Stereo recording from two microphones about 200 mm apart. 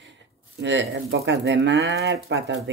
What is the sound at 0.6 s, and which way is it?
Speech, 60° right (ahead or behind).